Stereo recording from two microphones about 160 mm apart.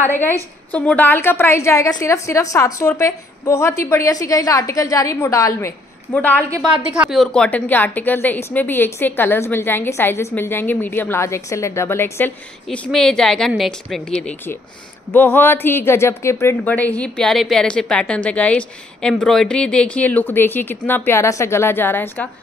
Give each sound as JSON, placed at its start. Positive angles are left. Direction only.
{"t": 0.0, "sound": "a woman's voice", "side_deg": 15}
{"t": 6.6, "sound": "a woman's voice", "side_deg": -5}
{"t": 15.1, "sound": "a woman's voice", "side_deg": 15}